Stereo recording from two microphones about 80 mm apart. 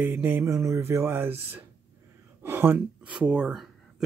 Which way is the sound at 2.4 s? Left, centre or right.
Right.